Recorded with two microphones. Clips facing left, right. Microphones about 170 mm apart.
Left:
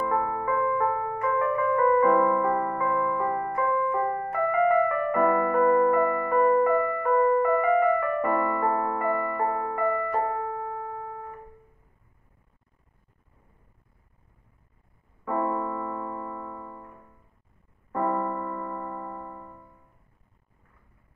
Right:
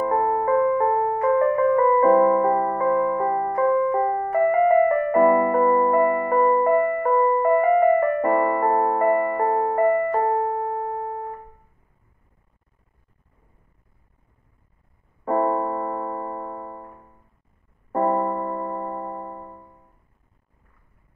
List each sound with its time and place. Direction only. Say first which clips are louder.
0.0 s music: right 6 dB; 40° right (ahead or behind)
15.2 s piano: right 6 dB; 40° right (ahead or behind)
17.9 s piano: right 5 dB; 40° right (ahead or behind)